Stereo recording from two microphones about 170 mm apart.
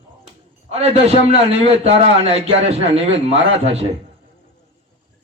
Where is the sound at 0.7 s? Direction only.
40° right (ahead or behind).